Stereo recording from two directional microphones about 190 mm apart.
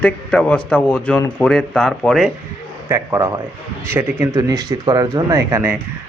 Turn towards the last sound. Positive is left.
turn(degrees=-15)  # may be behind; listen again after turning